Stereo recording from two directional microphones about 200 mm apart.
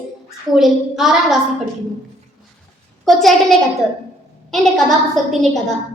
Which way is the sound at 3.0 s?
Centre (ahead or behind).